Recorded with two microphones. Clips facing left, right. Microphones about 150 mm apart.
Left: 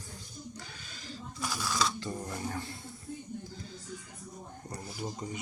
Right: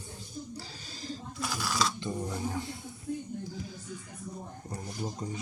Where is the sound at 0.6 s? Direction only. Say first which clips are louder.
Right 4 dB; 35° right (ahead or behind).